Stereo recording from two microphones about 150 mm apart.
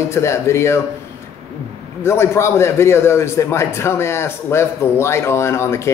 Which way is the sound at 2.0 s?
15° left (ahead or behind).